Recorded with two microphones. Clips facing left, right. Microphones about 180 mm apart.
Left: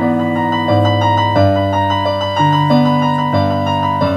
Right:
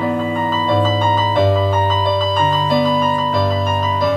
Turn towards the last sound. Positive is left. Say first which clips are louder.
# left 3 dB
turn(degrees=50)  # may be behind; listen again after turning